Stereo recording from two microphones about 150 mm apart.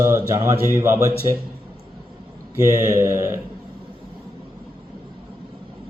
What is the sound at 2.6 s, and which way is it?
Mantra, 20° right (ahead or behind).